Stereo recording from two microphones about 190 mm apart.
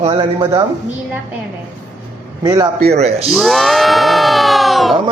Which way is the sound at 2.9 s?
35° right (ahead or behind).